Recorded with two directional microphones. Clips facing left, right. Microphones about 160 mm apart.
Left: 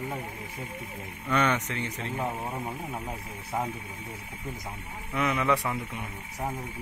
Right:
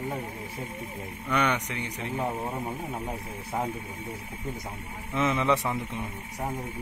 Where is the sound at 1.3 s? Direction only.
15° right (ahead or behind).